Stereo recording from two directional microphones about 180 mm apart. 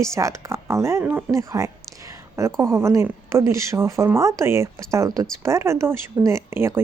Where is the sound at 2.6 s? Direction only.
15° right (ahead or behind).